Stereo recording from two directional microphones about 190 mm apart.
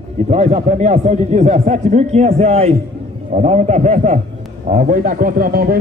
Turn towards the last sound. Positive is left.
turn(degrees=-55)  # may be behind; listen again after turning